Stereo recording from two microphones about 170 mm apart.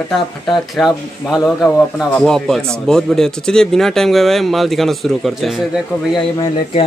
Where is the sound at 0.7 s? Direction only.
Centre (ahead or behind).